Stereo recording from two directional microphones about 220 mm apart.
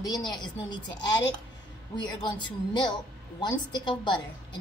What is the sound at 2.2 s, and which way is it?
A woman's voice, 20° left (ahead or behind).